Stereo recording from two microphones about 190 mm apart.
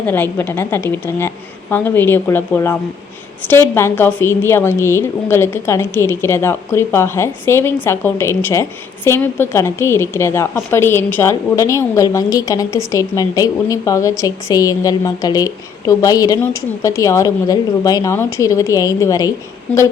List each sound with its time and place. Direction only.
0.0 s a woman's voice: 10° left (ahead or behind)
19.7 s a woman's voice: 5° left (ahead or behind)